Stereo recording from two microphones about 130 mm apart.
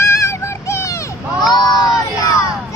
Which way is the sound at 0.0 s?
20° left (ahead or behind).